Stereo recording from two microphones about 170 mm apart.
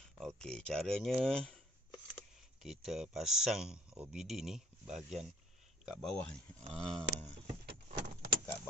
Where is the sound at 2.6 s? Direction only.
Centre (ahead or behind).